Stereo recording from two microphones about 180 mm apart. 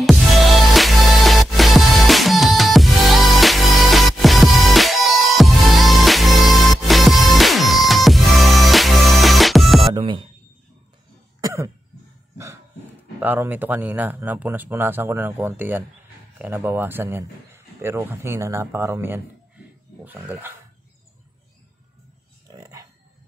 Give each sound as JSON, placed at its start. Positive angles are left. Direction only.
{"t": 0.0, "sound": "music", "side_deg": 0}
{"t": 9.9, "sound": "music", "side_deg": -25}
{"t": 11.4, "sound": "cough", "side_deg": -15}
{"t": 13.2, "sound": "speech", "side_deg": -10}
{"t": 22.5, "sound": "a sound", "side_deg": -20}